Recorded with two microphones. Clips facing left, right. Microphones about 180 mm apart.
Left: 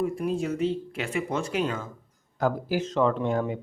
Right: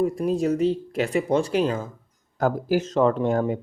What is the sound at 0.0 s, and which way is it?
Speech, 40° right (ahead or behind).